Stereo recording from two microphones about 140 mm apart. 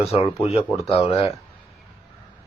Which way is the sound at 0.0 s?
45° left (ahead or behind).